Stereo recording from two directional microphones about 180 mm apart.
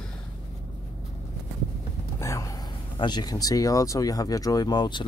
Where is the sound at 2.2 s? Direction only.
15° left (ahead or behind).